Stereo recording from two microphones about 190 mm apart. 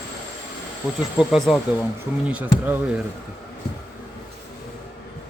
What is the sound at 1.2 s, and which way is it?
Speech, centre (ahead or behind).